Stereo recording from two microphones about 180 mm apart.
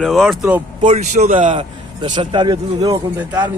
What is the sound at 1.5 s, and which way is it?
Speech, 30° right (ahead or behind).